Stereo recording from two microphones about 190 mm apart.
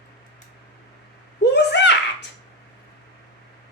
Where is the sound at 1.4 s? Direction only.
65° left (ahead or behind).